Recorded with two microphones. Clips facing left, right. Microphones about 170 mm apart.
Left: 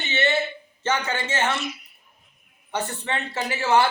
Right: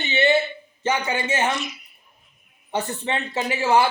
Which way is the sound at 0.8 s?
15° right (ahead or behind).